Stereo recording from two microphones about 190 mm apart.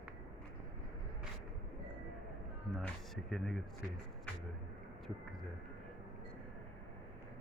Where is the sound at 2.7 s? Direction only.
5° left (ahead or behind).